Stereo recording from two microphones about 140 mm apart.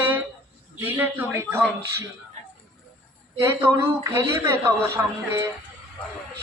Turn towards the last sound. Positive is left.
turn(degrees=-20)  # may be behind; listen again after turning